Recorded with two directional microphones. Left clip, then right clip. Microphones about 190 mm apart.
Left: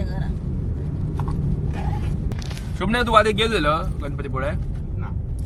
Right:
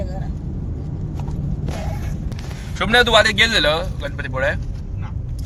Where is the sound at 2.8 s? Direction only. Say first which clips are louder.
Right 4 dB; centre (ahead or behind).